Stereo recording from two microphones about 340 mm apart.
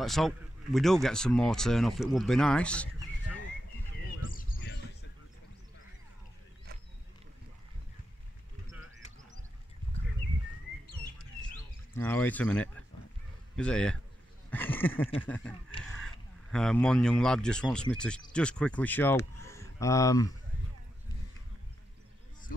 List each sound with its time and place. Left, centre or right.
0.0 s speech: centre
4.3 s a sound: left
11.9 s speech: centre
16.5 s speech: centre